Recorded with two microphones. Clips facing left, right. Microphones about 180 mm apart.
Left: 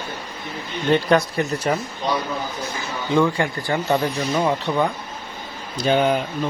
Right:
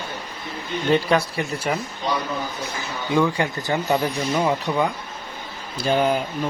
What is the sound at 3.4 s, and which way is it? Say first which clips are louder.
Speech: left 1 dB; 20° right (ahead or behind).